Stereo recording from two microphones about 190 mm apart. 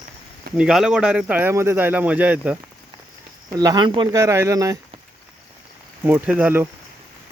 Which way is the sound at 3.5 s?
20° right (ahead or behind).